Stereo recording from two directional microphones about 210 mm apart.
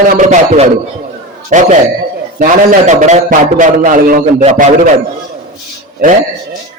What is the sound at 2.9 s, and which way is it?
Speech, 35° right (ahead or behind).